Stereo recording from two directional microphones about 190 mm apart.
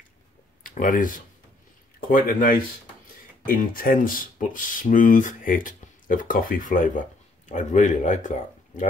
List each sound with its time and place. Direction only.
0.7 s speech: 45° left (ahead or behind)